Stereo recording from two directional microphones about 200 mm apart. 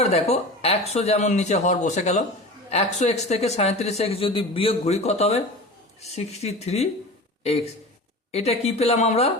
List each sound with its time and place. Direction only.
0.0 s speech: 30° left (ahead or behind)